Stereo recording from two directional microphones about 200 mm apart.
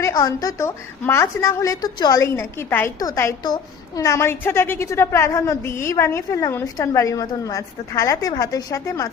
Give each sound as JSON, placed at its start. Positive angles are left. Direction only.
{"t": 0.0, "sound": "a woman's voice", "side_deg": 20}